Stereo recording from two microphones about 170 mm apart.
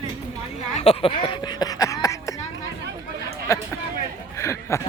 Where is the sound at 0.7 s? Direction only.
35° left (ahead or behind).